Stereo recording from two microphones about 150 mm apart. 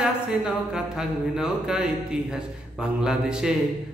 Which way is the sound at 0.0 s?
5° right (ahead or behind).